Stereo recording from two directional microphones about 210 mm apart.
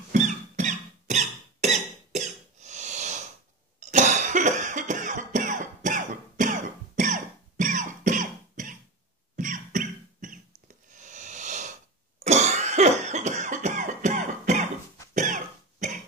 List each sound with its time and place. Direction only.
0.1 s squeak: 35° right (ahead or behind)
3.8 s cough: 35° right (ahead or behind)
10.9 s a sound: 35° right (ahead or behind)
12.3 s cough: 35° right (ahead or behind)